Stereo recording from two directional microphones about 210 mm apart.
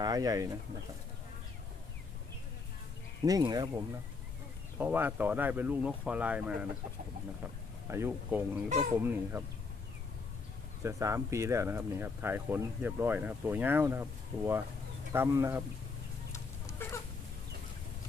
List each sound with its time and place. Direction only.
0.0 s speech: 15° right (ahead or behind)
3.2 s speech: 20° right (ahead or behind)
7.9 s speech: 10° right (ahead or behind)
10.8 s speech: 15° right (ahead or behind)